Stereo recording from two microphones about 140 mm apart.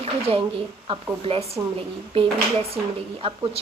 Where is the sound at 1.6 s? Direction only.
25° right (ahead or behind).